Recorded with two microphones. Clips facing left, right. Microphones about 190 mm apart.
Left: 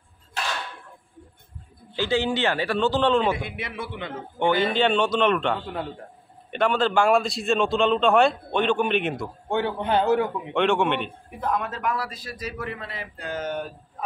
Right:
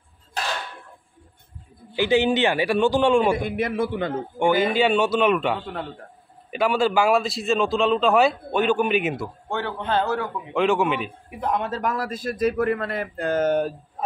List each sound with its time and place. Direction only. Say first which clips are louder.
2.0 s a man's voice: right 4 dB; 15° right (ahead or behind)
3.3 s speech: right 9 dB; 45° right (ahead or behind)
4.4 s a man's voice: right 2 dB; 10° right (ahead or behind)
9.5 s a man's voice: left 2 dB; 15° left (ahead or behind)
10.5 s a man's voice: right 2 dB; centre (ahead or behind)
11.5 s speech: right 2 dB; 30° right (ahead or behind)